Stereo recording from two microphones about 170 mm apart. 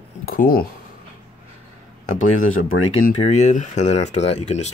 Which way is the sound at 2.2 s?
45° left (ahead or behind).